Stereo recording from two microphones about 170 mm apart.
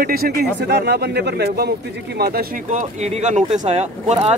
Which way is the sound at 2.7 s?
45° right (ahead or behind).